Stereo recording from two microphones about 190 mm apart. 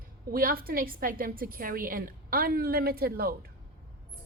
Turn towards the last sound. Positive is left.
turn(degrees=-50)  # may be behind; listen again after turning